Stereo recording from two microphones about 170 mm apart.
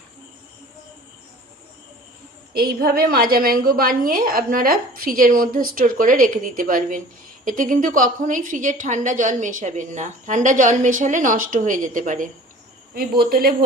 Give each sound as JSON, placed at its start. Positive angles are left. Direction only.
{"t": 2.5, "sound": "a woman's voice", "side_deg": -60}
{"t": 12.9, "sound": "a woman's voice", "side_deg": -60}